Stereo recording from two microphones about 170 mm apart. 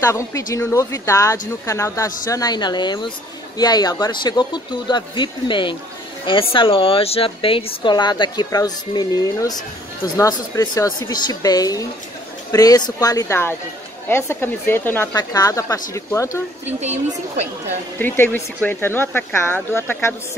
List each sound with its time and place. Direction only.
0.0 s speech: 20° left (ahead or behind)
16.8 s a woman's voice: 40° right (ahead or behind)
17.9 s speech: 10° left (ahead or behind)